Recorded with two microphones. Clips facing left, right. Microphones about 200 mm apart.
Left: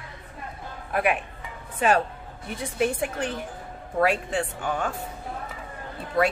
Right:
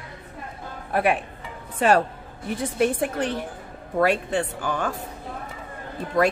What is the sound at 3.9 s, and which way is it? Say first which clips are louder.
Speech: right 2 dB; 35° right (ahead or behind).